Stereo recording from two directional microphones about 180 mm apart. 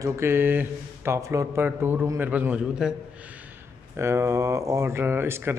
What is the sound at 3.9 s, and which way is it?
Speech, 15° right (ahead or behind).